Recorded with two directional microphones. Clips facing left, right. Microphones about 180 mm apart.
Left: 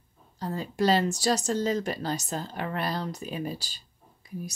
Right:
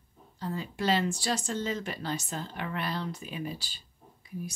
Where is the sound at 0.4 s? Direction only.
40° left (ahead or behind).